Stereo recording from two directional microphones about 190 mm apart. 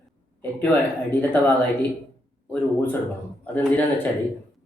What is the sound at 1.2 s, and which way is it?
Speech, 10° left (ahead or behind).